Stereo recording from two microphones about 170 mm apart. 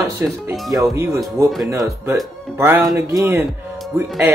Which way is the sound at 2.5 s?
15° right (ahead or behind).